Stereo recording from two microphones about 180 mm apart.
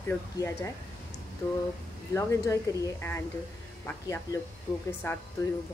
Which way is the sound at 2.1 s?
15° left (ahead or behind).